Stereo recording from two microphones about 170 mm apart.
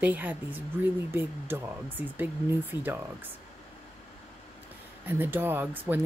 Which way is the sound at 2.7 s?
25° left (ahead or behind).